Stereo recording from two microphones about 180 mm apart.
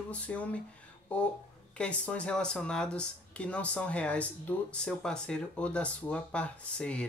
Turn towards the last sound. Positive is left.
turn(degrees=5)  # may be behind; listen again after turning